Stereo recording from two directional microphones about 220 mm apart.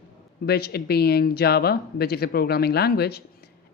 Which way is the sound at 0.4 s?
45° left (ahead or behind).